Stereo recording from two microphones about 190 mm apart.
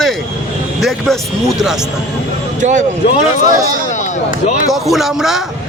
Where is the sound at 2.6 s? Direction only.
40° right (ahead or behind).